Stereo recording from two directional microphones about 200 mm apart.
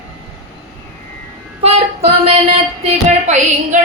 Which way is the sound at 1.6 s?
30° right (ahead or behind).